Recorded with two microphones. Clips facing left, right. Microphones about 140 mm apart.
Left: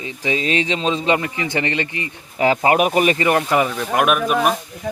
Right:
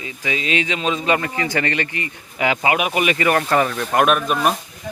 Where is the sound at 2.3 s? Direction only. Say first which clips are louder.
Left 4 dB; 35° left (ahead or behind).